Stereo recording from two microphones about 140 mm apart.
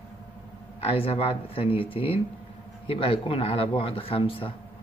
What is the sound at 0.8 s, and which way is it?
Speech, 40° left (ahead or behind).